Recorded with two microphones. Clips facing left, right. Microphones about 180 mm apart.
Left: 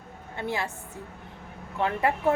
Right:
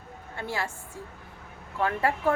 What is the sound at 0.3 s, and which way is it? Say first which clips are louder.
Speech: left 2 dB; 20° left (ahead or behind).